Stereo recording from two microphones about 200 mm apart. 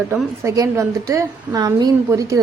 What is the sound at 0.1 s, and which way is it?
A woman's voice, 15° right (ahead or behind).